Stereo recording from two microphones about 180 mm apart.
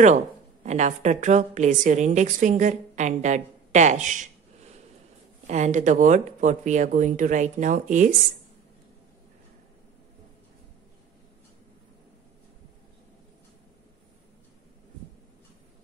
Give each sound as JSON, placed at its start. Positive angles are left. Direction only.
{"t": 0.7, "sound": "a woman's voice", "side_deg": -40}
{"t": 5.5, "sound": "speech", "side_deg": -40}